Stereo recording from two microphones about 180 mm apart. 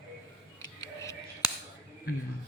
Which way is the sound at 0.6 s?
15° left (ahead or behind).